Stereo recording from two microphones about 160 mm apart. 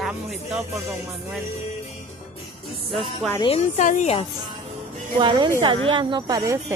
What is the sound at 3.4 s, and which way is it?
Speech, 40° left (ahead or behind).